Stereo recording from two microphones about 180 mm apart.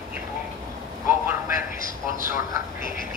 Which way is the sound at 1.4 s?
50° left (ahead or behind).